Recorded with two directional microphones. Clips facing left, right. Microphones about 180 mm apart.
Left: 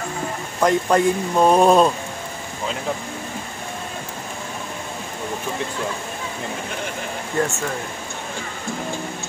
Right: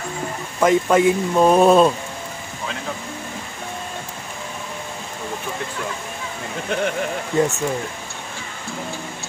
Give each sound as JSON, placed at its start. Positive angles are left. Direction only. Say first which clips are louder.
{"t": 0.6, "sound": "speech", "louder": "right 2 dB", "side_deg": -5}
{"t": 7.3, "sound": "speech", "louder": "right 3 dB", "side_deg": -20}